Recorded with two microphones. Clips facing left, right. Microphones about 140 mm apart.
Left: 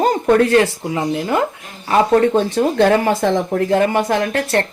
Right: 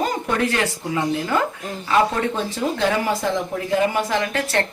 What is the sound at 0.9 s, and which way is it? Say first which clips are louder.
Speech: even; 25° left (ahead or behind).